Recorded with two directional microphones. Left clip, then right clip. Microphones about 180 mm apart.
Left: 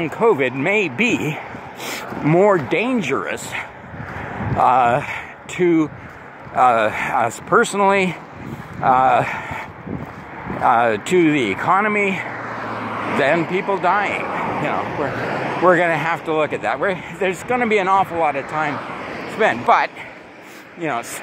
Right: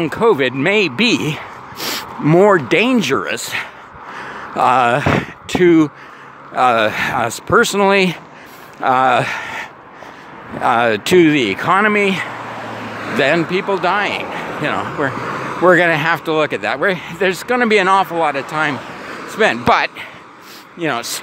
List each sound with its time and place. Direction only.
0.0 s speech: 45° right (ahead or behind)
2.7 s speech: 60° right (ahead or behind)
12.4 s vehicle: 5° left (ahead or behind)
13.2 s speech: 50° right (ahead or behind)
14.1 s a sound: centre (ahead or behind)
14.6 s speech: 55° right (ahead or behind)
15.1 s vehicle: 10° right (ahead or behind)
15.6 s speech: 45° right (ahead or behind)
18.8 s a sound: 5° right (ahead or behind)
19.3 s speech: 55° right (ahead or behind)